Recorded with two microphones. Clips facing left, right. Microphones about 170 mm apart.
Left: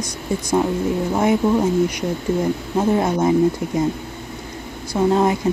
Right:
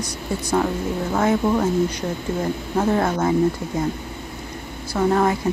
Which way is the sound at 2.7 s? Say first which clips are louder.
Left 1 dB; 15° left (ahead or behind).